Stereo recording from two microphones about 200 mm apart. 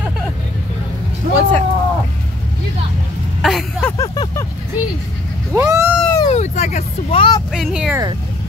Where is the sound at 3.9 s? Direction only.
20° left (ahead or behind).